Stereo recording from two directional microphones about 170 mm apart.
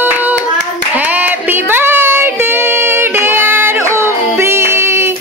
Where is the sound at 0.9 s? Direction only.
10° right (ahead or behind).